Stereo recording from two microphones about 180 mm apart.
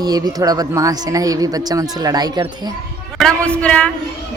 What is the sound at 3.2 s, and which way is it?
Speech, 5° left (ahead or behind).